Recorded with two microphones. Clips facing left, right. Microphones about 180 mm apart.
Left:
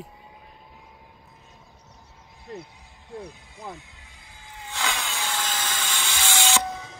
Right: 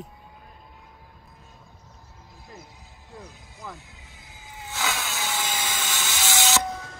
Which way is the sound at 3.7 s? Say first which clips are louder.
Left 2 dB; centre (ahead or behind).